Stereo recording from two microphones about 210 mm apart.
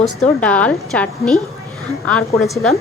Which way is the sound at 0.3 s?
5° left (ahead or behind).